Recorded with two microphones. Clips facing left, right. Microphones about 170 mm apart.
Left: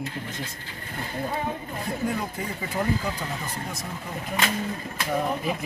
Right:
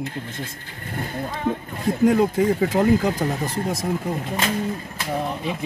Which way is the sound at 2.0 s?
80° right.